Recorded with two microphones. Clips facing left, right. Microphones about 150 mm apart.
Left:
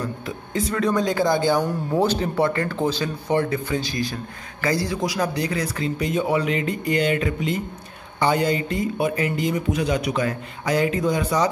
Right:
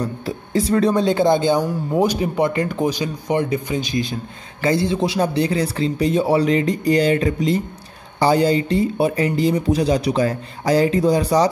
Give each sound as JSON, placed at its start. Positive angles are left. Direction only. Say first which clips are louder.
{"t": 0.0, "sound": "speech", "louder": "right 4 dB", "side_deg": -35}
{"t": 1.6, "sound": "speech", "louder": "right 2 dB", "side_deg": 0}
{"t": 2.0, "sound": "speech", "louder": "right 2 dB", "side_deg": -15}